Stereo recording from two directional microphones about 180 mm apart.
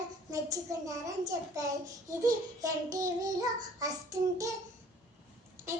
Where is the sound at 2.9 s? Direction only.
20° right (ahead or behind).